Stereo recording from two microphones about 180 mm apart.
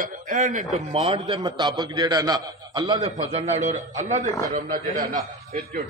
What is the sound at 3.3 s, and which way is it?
A man's voice, 40° right (ahead or behind).